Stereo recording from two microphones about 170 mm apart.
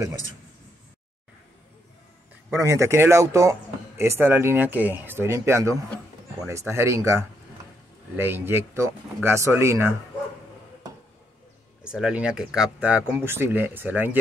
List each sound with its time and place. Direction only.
2.5 s speech: 15° right (ahead or behind)
11.8 s speech: 5° right (ahead or behind)